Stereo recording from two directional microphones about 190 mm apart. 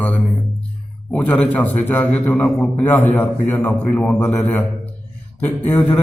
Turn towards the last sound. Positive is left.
turn(degrees=10)  # may be behind; listen again after turning